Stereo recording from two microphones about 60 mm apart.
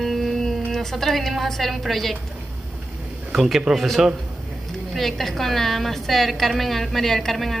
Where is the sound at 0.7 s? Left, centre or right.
Centre.